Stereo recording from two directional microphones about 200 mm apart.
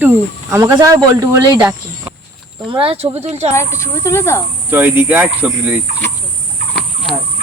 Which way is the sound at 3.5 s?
15° left (ahead or behind).